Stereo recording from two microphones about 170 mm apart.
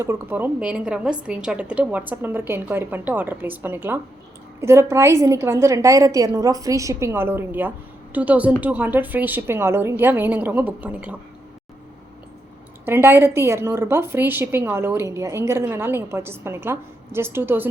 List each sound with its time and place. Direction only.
0.0 s a woman's voice: 15° right (ahead or behind)
12.8 s a woman's voice: 15° right (ahead or behind)